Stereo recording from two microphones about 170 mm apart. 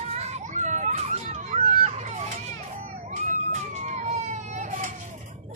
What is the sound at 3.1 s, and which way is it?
Children playing, 45° right (ahead or behind).